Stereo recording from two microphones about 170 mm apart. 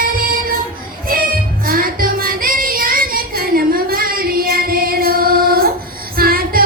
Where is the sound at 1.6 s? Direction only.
60° right (ahead or behind).